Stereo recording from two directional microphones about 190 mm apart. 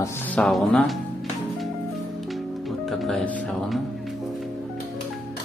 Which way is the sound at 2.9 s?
5° left (ahead or behind).